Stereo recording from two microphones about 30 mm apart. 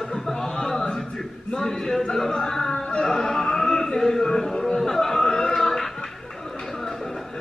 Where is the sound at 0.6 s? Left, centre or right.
Centre.